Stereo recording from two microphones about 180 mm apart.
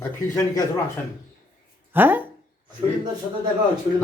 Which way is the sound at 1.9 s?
10° right (ahead or behind).